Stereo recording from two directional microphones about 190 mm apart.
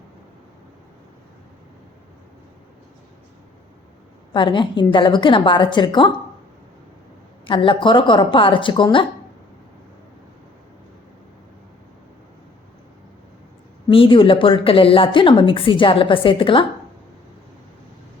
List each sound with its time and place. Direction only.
4.4 s a woman's voice: 25° left (ahead or behind)
7.4 s a woman's voice: 25° left (ahead or behind)
13.9 s a woman's voice: 30° left (ahead or behind)